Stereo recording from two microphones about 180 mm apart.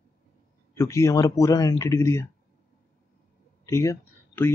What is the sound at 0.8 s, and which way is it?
Speech, 15° left (ahead or behind).